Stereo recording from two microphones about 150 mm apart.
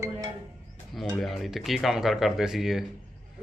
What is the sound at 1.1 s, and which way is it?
Speech, centre (ahead or behind).